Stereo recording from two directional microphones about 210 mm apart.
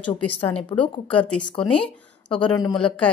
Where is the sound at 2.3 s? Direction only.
20° left (ahead or behind).